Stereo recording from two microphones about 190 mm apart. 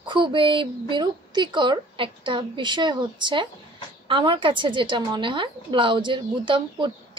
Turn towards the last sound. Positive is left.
turn(degrees=-25)  # may be behind; listen again after turning